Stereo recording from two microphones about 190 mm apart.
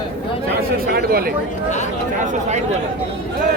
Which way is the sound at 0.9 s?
55° right (ahead or behind).